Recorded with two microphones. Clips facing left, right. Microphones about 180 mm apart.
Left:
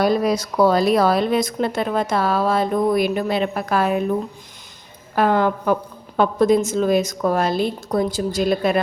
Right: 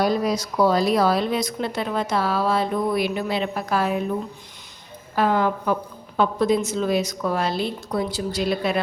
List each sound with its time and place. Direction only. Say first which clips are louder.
0.0 s speech: left 3 dB; 60° left (ahead or behind)
5.1 s speech: left 3 dB; 60° left (ahead or behind)